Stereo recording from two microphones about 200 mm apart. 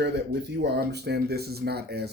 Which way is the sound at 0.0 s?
55° right (ahead or behind).